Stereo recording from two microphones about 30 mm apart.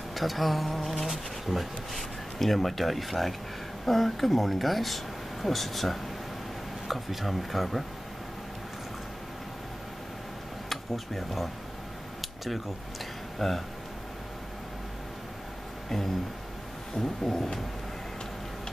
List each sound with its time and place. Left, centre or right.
0.1 s speech: centre
1.0 s speech: centre
2.0 s speech: centre
10.7 s speech: centre
13.4 s speech: centre
17.0 s a sound: centre